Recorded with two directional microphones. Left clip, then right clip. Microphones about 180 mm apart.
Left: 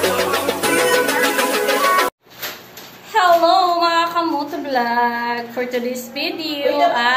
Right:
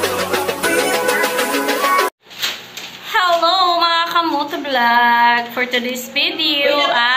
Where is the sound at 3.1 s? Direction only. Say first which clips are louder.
Left 1 dB; 10° left (ahead or behind).